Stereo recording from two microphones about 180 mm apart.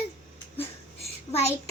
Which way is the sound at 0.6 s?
35° left (ahead or behind).